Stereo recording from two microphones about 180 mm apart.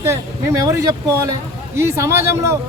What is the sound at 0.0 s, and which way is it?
Speech, 15° right (ahead or behind).